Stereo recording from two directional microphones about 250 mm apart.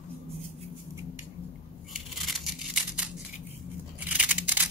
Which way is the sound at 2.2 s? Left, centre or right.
Centre.